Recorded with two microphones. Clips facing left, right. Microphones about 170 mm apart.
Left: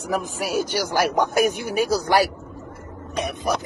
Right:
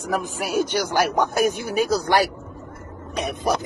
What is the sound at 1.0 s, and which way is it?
A man's voice, 10° left (ahead or behind).